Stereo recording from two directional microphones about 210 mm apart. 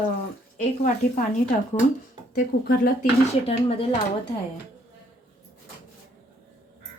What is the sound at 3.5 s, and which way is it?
Speech, 25° left (ahead or behind).